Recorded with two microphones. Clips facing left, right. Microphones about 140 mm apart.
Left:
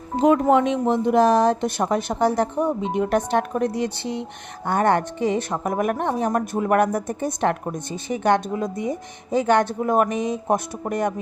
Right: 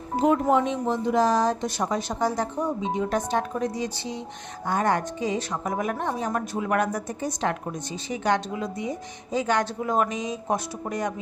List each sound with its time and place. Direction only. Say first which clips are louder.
0.3 s speech: left 5 dB; 70° left (ahead or behind); by 11.1 s 55° left (ahead or behind)